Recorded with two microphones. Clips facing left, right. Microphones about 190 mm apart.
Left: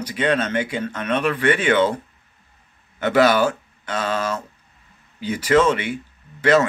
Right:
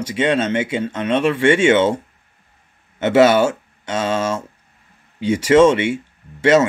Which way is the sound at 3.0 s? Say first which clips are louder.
Right 4 dB; 25° right (ahead or behind).